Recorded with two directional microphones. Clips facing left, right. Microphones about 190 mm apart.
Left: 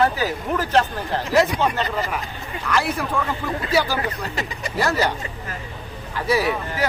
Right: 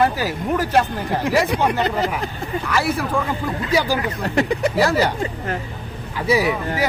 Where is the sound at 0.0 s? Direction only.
10° right (ahead or behind).